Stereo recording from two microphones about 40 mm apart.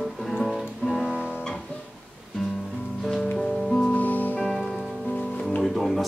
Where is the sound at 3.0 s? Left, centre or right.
Centre.